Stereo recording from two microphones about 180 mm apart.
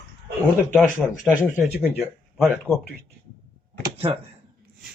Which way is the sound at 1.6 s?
10° right (ahead or behind).